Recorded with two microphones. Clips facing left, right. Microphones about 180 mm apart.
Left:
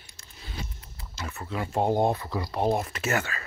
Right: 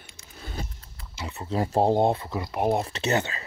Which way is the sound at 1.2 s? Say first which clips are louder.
Right 1 dB; 20° right (ahead or behind).